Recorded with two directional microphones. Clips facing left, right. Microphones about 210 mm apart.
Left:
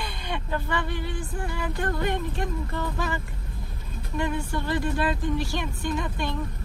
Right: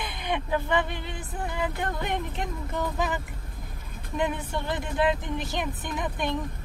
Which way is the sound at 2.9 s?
15° right (ahead or behind).